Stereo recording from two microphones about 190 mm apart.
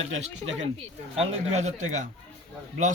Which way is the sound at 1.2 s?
35° right (ahead or behind).